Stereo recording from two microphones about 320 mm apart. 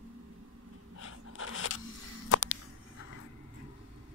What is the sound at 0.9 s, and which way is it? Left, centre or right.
Scrape, left.